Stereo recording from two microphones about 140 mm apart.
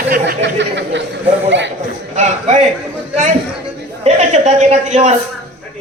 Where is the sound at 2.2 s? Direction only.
55° right (ahead or behind).